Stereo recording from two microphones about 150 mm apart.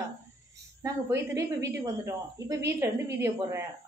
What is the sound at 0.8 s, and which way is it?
A woman's voice, 20° right (ahead or behind).